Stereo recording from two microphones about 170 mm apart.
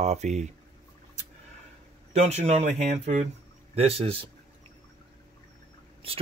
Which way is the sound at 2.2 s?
40° right (ahead or behind).